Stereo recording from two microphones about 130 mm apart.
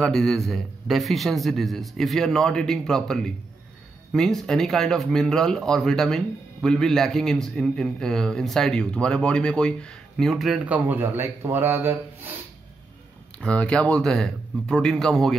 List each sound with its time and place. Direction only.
0.0 s speech: 5° left (ahead or behind); by 12.4 s 15° right (ahead or behind)
13.4 s speech: 10° left (ahead or behind)